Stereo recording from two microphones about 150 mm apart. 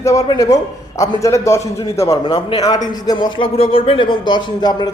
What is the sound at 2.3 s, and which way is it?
A man's voice, 35° left (ahead or behind).